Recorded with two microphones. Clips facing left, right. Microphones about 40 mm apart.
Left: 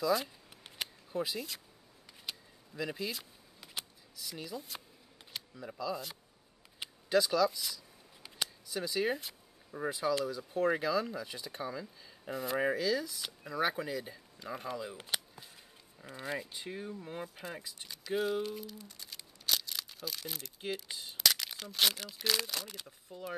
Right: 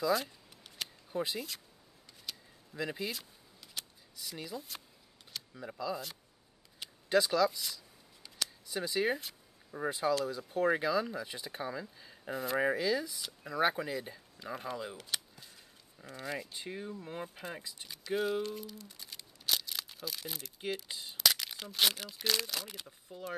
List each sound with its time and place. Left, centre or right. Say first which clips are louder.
0.0 s speech: even; centre
0.7 s a sound: left 3 dB; left
1.1 s speech: even; centre
2.7 s speech: even; centre
3.6 s a sound: left 3 dB; left
4.2 s speech: even; centre
7.1 s speech: even; centre
9.8 s speech: right 1 dB; centre
15.0 s cap gun: left 2 dB; centre
16.1 s speech: left 1 dB; centre
16.5 s speech: even; centre